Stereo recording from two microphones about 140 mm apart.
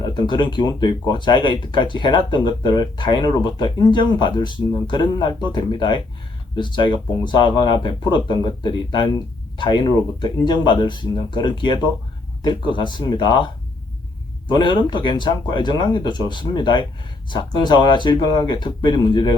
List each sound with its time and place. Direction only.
0.0 s speech: 35° left (ahead or behind)
14.5 s speech: 35° left (ahead or behind)